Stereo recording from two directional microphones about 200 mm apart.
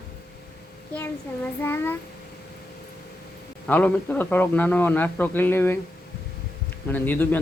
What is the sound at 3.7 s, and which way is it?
A man's voice, 10° left (ahead or behind).